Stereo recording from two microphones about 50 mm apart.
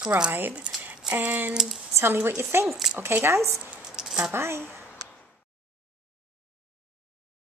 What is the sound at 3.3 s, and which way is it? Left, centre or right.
Speech, right.